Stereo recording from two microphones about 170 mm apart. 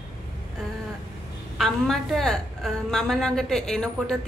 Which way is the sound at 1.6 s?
Centre (ahead or behind).